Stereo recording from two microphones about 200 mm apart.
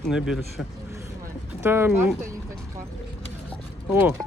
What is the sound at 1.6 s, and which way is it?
Speech, 10° right (ahead or behind).